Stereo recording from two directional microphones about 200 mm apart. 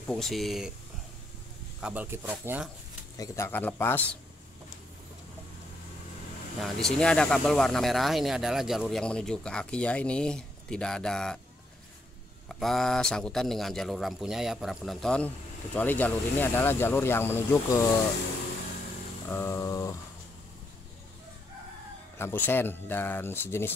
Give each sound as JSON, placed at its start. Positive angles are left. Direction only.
{"t": 0.0, "sound": "a man's voice", "side_deg": 0}
{"t": 1.8, "sound": "speech", "side_deg": -5}
{"t": 3.2, "sound": "speech", "side_deg": 15}
{"t": 6.6, "sound": "a man's voice", "side_deg": 0}
{"t": 12.4, "sound": "a man's voice", "side_deg": 0}
{"t": 19.2, "sound": "a sound", "side_deg": 10}
{"t": 22.2, "sound": "speech", "side_deg": 10}